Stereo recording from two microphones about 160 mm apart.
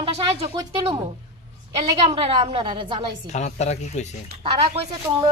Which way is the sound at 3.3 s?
45° left (ahead or behind).